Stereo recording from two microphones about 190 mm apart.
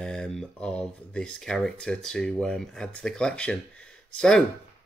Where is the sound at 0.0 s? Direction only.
5° left (ahead or behind).